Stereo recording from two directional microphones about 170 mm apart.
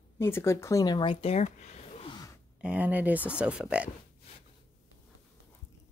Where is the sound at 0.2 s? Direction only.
15° left (ahead or behind); by 2.1 s 40° left (ahead or behind).